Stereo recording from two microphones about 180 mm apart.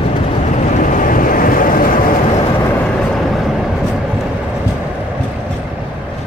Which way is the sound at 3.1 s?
Centre (ahead or behind).